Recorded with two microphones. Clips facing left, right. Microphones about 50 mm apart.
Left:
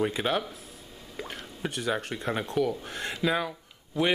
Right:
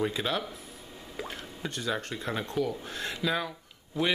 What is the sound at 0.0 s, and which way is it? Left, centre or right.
Speech, centre.